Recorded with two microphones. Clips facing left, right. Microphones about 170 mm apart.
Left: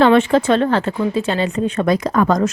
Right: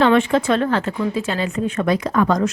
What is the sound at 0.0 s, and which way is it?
Speech, 35° left (ahead or behind).